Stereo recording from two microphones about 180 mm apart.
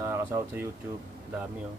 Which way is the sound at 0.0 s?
15° right (ahead or behind).